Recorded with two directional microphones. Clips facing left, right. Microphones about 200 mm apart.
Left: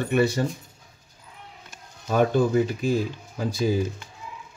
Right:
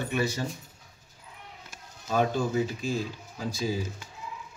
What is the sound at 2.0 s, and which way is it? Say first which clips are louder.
Speech: left 6 dB; 55° left (ahead or behind).